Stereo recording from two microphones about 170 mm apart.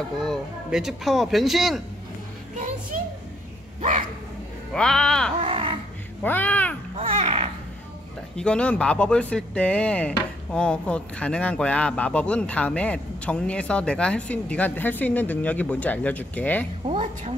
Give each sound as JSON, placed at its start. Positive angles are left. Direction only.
{"t": 0.2, "sound": "speech", "side_deg": 0}
{"t": 2.5, "sound": "music", "side_deg": -45}
{"t": 4.7, "sound": "speech", "side_deg": 5}
{"t": 5.4, "sound": "dog", "side_deg": -35}
{"t": 6.2, "sound": "speech", "side_deg": 10}
{"t": 7.0, "sound": "babbling", "side_deg": -35}
{"t": 8.4, "sound": "speech", "side_deg": 5}
{"t": 16.8, "sound": "a woman's voice", "side_deg": -40}